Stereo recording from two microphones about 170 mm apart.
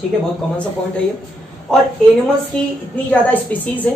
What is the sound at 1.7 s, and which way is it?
Speech, 5° left (ahead or behind).